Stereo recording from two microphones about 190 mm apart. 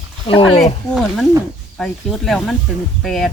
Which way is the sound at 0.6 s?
Centre (ahead or behind).